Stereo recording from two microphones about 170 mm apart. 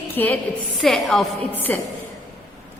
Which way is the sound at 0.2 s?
10° left (ahead or behind).